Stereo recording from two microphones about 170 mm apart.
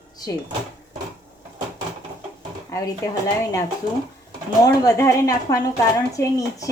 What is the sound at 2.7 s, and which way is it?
Speech, 20° left (ahead or behind).